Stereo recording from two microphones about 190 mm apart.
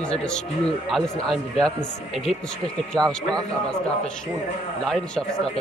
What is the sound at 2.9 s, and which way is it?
Speech, 20° right (ahead or behind).